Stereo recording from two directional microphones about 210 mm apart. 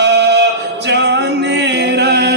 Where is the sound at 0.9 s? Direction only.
55° right (ahead or behind).